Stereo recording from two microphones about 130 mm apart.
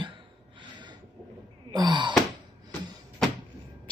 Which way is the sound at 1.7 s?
35° right (ahead or behind).